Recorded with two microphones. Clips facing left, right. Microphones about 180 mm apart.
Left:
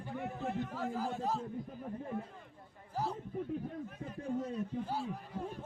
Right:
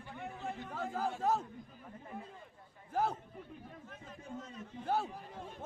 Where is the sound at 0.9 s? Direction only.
55° right (ahead or behind).